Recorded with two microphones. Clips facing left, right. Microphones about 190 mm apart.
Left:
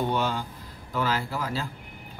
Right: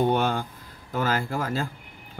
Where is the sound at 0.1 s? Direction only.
55° right (ahead or behind).